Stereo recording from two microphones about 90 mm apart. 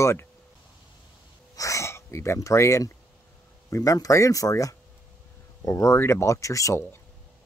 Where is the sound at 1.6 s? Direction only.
35° left (ahead or behind).